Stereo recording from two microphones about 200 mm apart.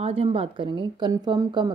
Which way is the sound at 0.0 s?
30° right (ahead or behind).